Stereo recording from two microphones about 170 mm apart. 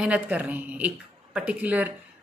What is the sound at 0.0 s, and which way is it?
Speech, 10° right (ahead or behind).